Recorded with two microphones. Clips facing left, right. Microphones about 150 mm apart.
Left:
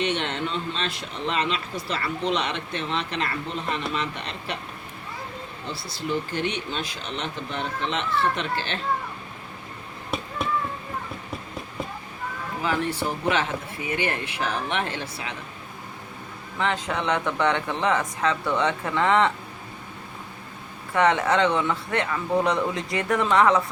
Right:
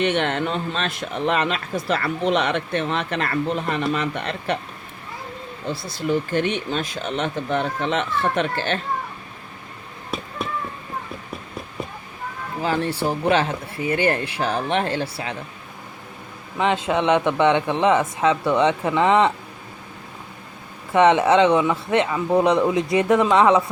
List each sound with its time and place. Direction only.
0.0 s speech: 55° right (ahead or behind)
5.9 s speech: 50° right (ahead or behind)
12.6 s speech: 30° right (ahead or behind)
16.6 s speech: 20° right (ahead or behind)
20.9 s speech: 20° right (ahead or behind)